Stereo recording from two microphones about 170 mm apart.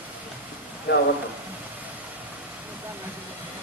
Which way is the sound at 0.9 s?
70° left (ahead or behind).